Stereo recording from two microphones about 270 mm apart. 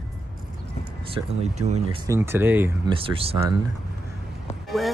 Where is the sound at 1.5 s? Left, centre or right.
Right.